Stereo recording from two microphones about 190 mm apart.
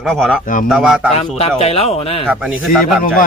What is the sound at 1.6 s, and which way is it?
Speech, 30° left (ahead or behind).